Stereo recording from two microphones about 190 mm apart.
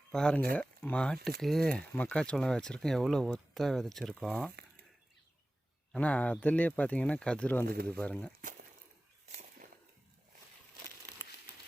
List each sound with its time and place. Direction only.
0.1 s speech: 5° left (ahead or behind)
5.9 s speech: 5° left (ahead or behind)
9.3 s a sound: 35° right (ahead or behind)